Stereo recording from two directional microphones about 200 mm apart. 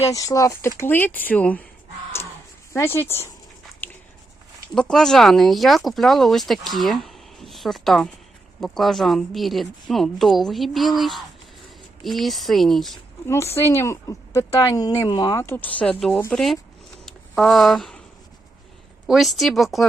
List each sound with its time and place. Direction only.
0.1 s speech: 15° left (ahead or behind)
2.7 s speech: 10° left (ahead or behind)
3.8 s a sound: 10° left (ahead or behind)
4.7 s speech: 5° left (ahead or behind)
13.2 s speech: 15° left (ahead or behind)
19.0 s speech: centre (ahead or behind)